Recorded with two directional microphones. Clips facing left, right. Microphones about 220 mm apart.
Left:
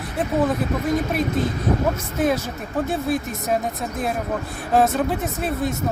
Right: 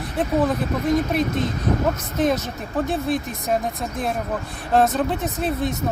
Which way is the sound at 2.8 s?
Centre (ahead or behind).